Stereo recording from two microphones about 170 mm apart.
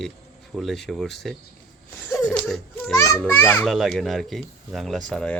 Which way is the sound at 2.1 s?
5° left (ahead or behind).